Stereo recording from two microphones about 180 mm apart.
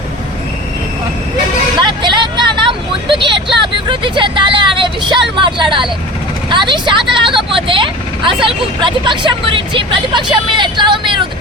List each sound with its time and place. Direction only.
1.9 s vehicle: 25° right (ahead or behind)
6.5 s speech: 25° right (ahead or behind)